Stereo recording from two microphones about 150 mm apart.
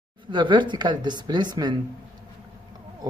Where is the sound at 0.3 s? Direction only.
30° right (ahead or behind).